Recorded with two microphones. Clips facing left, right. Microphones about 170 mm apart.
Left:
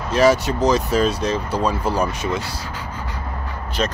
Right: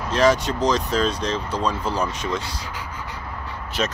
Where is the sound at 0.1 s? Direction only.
10° left (ahead or behind).